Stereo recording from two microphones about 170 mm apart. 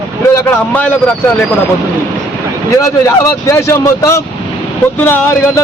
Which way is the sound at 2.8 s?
15° left (ahead or behind).